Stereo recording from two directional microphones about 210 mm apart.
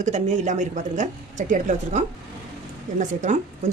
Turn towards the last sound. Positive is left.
turn(degrees=-35)  # may be behind; listen again after turning